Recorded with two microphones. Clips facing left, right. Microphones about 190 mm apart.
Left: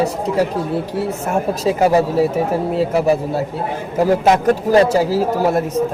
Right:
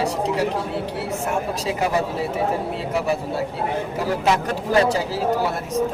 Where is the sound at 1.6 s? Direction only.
40° left (ahead or behind).